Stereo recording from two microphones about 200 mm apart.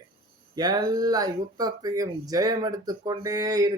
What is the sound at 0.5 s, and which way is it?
Speech, 20° right (ahead or behind).